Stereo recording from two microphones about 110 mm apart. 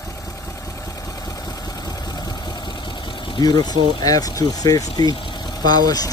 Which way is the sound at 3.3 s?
40° left (ahead or behind).